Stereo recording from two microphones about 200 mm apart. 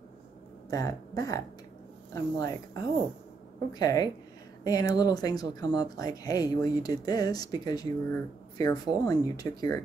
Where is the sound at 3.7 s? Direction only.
20° left (ahead or behind).